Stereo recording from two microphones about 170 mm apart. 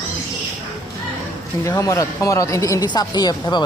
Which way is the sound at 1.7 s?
20° left (ahead or behind).